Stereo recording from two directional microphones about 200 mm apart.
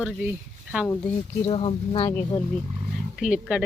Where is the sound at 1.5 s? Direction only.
30° left (ahead or behind).